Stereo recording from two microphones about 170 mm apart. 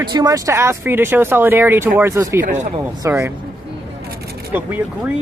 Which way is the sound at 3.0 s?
15° right (ahead or behind).